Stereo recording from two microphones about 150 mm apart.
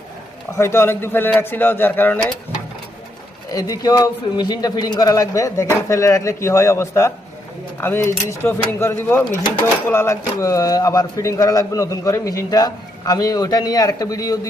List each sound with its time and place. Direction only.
0.5 s speech: 15° left (ahead or behind)
3.5 s speech: 25° left (ahead or behind)